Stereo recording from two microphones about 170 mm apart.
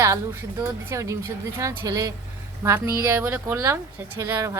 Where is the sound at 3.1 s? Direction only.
15° right (ahead or behind).